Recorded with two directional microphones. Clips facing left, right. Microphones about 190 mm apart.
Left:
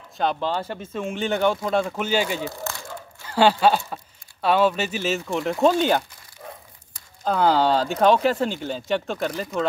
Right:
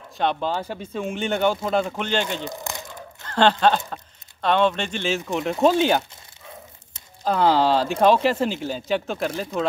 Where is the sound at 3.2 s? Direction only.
10° left (ahead or behind).